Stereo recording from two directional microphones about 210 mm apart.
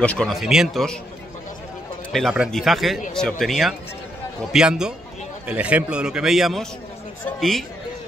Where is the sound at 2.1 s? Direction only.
Centre (ahead or behind).